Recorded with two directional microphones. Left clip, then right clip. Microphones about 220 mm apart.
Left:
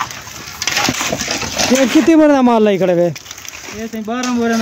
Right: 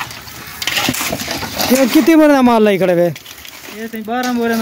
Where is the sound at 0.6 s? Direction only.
15° right (ahead or behind).